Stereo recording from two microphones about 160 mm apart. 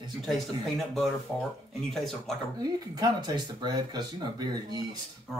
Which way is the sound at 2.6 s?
25° right (ahead or behind).